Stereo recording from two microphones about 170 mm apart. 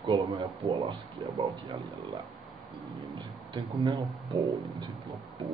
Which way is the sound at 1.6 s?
25° right (ahead or behind).